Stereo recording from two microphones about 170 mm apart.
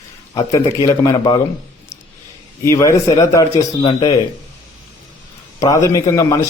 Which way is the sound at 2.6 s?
20° left (ahead or behind).